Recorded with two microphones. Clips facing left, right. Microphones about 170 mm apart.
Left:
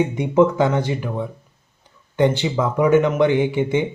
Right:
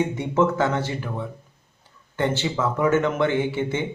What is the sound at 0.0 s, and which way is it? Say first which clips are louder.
A man's voice: left 5 dB; 15° left (ahead or behind).